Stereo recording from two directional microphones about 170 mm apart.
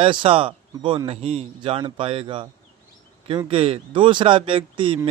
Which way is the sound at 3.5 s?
35° right (ahead or behind).